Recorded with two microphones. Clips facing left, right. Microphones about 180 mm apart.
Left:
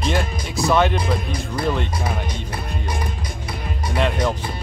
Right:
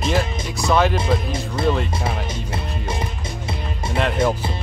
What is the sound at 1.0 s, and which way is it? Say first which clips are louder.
Speech: right 2 dB; 25° right (ahead or behind).